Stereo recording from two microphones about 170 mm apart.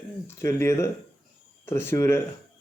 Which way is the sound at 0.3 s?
15° left (ahead or behind).